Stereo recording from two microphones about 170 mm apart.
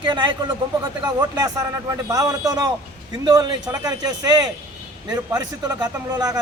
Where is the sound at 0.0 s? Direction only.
25° right (ahead or behind).